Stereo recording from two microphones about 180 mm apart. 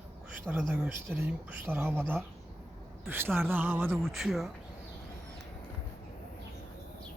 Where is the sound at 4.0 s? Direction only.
Centre (ahead or behind).